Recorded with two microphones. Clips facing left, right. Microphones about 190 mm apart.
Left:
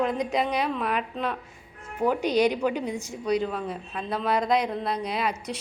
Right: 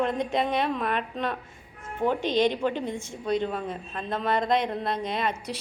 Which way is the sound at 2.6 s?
5° left (ahead or behind).